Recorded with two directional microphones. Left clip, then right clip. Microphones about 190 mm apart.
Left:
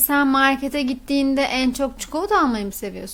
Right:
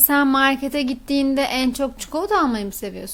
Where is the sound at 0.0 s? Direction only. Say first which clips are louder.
Even; 5° right (ahead or behind).